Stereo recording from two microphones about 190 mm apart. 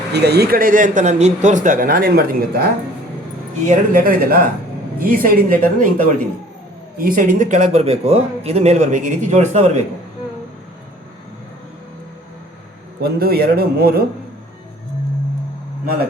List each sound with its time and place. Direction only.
0.1 s speech: 60° right (ahead or behind)
3.9 s a man's voice: 50° right (ahead or behind)
13.0 s a man's voice: 55° right (ahead or behind)